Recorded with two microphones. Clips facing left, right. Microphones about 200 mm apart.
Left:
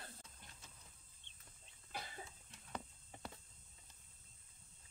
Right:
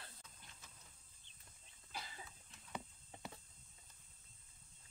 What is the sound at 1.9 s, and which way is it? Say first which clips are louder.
Cough: left 2 dB; 50° left (ahead or behind).